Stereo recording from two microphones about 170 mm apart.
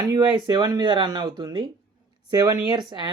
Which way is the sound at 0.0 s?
25° right (ahead or behind).